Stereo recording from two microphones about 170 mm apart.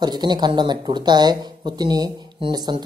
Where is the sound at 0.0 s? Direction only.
25° right (ahead or behind).